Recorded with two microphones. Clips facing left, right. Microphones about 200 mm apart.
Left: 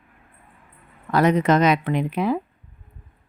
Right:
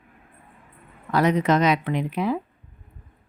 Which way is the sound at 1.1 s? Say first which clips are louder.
Left 2 dB; 50° left (ahead or behind).